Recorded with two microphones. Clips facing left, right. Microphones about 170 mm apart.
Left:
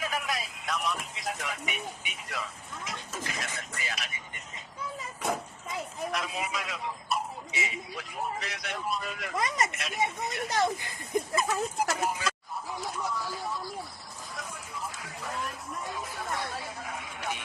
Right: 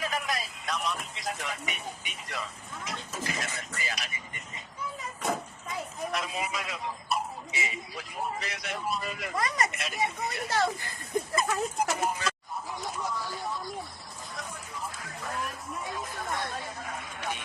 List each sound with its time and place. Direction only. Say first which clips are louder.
0.0 s a sound: right 1 dB; 5° left (ahead or behind)
6.1 s speech: right 1 dB; centre (ahead or behind)
9.3 s speech: left 1 dB; 20° left (ahead or behind)
9.7 s speech: even; centre (ahead or behind)
10.5 s speech: even; 15° left (ahead or behind)
11.3 s speech: right 2 dB; centre (ahead or behind)
12.8 s a sound: left 1 dB; centre (ahead or behind)
15.0 s a sound: even; 5° left (ahead or behind)
15.9 s chatter: right 1 dB; 5° left (ahead or behind)